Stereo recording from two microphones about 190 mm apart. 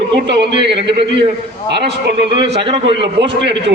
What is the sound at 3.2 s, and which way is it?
Speech, 65° right (ahead or behind).